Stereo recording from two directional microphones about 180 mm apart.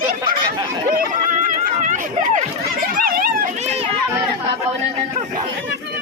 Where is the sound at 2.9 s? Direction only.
55° right (ahead or behind).